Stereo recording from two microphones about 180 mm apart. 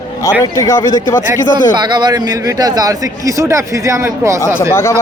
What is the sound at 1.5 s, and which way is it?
Speech, 25° right (ahead or behind).